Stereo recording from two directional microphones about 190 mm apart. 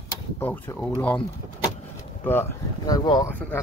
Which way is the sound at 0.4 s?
10° left (ahead or behind).